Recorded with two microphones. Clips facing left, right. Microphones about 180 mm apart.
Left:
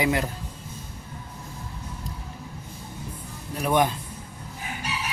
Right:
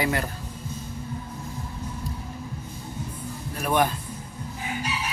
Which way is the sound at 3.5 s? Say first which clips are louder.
Left 1 dB; 15° left (ahead or behind).